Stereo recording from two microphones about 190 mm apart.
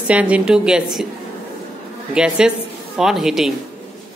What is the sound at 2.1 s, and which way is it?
Speech, 5° right (ahead or behind).